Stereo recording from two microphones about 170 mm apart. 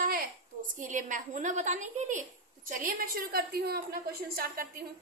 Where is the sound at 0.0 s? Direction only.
55° right (ahead or behind).